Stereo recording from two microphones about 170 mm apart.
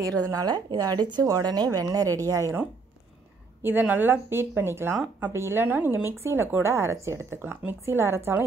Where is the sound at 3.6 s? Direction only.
10° right (ahead or behind).